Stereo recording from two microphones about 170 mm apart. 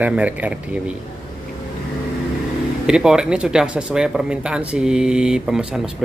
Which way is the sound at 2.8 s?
5° right (ahead or behind).